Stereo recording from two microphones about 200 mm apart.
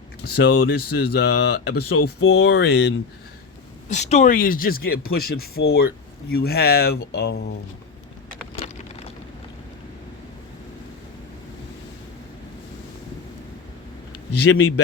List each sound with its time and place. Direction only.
0.3 s speech: 55° left (ahead or behind)
2.0 s speech: 90° left; by 2.9 s 60° left (ahead or behind)
3.8 s speech: 35° left (ahead or behind); by 7.5 s 55° left (ahead or behind)
8.5 s vehicle: 30° left (ahead or behind)
14.4 s a man's voice: 90° left